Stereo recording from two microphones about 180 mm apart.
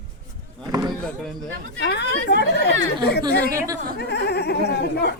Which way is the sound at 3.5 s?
15° right (ahead or behind).